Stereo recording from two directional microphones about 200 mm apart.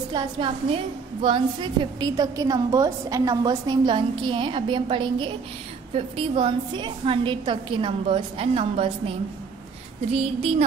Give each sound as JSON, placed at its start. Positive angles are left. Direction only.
{"t": 0.1, "sound": "a woman's voice", "side_deg": -20}
{"t": 10.1, "sound": "speech", "side_deg": -30}